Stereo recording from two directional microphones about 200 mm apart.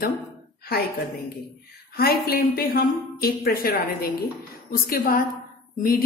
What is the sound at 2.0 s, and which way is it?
A woman's voice, 50° left (ahead or behind).